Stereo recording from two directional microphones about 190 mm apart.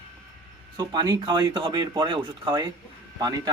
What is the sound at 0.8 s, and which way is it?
Speech, 20° right (ahead or behind).